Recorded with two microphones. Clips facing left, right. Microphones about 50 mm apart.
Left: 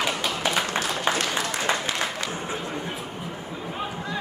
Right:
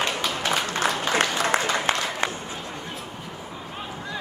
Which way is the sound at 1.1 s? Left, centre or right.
Right.